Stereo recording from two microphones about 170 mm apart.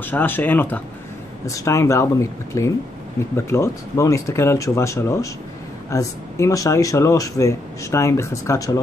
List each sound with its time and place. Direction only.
0.0 s speech: 10° left (ahead or behind)